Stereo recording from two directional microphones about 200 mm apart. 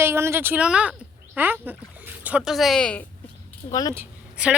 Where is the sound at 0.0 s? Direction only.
10° right (ahead or behind); by 3.0 s 5° left (ahead or behind).